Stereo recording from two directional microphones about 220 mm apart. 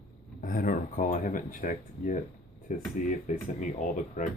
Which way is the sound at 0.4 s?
40° left (ahead or behind).